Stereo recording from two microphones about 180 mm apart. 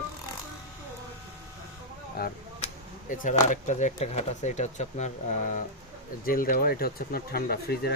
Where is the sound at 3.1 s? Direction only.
45° left (ahead or behind).